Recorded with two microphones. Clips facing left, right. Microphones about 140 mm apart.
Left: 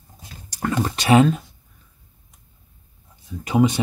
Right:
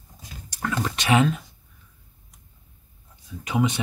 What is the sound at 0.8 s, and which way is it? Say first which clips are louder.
Speech: left 5 dB; 35° left (ahead or behind).